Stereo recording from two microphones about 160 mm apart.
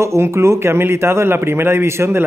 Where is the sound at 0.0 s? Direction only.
15° right (ahead or behind).